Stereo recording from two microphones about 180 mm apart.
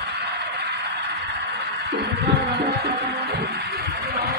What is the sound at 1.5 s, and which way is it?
Music, 70° right (ahead or behind).